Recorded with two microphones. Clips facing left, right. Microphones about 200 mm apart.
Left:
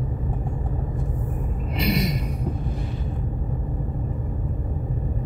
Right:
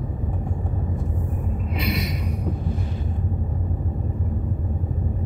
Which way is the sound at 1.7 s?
45° left (ahead or behind).